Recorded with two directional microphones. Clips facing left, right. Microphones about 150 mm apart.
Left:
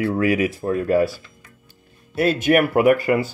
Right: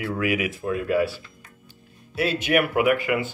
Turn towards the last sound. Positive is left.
turn(degrees=40)  # may be behind; listen again after turning